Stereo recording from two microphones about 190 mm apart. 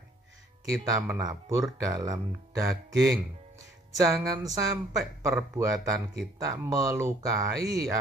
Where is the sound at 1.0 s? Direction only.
15° right (ahead or behind).